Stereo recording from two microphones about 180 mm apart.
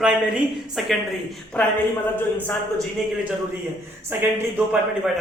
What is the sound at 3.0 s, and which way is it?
Speech, centre (ahead or behind).